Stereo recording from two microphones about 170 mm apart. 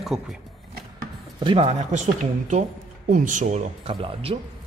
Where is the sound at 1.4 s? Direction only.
35° right (ahead or behind).